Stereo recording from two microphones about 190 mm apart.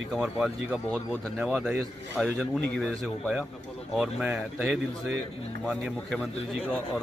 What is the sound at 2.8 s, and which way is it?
Speech, 10° right (ahead or behind).